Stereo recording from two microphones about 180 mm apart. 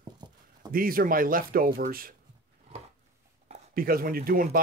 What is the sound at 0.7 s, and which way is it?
Speech, 55° right (ahead or behind).